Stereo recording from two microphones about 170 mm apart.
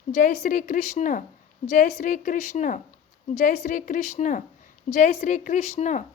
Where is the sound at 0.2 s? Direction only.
50° left (ahead or behind).